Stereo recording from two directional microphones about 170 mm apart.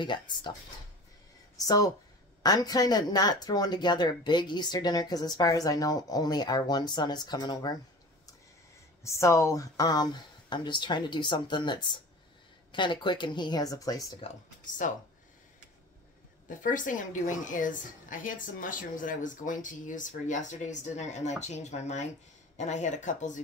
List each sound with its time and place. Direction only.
0.0 s speech: 25° left (ahead or behind)
2.4 s speech: 20° left (ahead or behind)
9.0 s speech: 15° left (ahead or behind)
14.2 s speech: 50° left (ahead or behind)
16.4 s a woman's voice: 50° left (ahead or behind)